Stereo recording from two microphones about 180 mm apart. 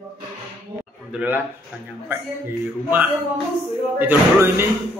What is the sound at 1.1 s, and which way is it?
Speech, 5° right (ahead or behind).